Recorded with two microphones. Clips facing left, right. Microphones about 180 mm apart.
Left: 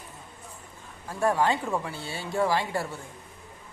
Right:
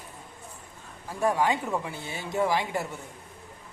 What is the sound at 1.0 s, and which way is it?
Speech, 15° right (ahead or behind).